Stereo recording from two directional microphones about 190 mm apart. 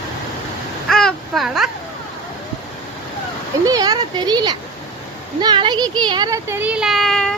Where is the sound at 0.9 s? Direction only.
Centre (ahead or behind).